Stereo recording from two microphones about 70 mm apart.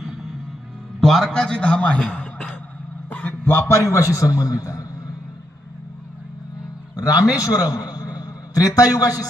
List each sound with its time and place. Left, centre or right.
0.0 s music: centre
1.0 s a man's voice: centre
3.1 s a man's voice: left
6.9 s a man's voice: left